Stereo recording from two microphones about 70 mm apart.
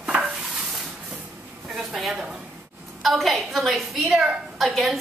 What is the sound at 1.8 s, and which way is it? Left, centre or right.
A woman's voice, centre.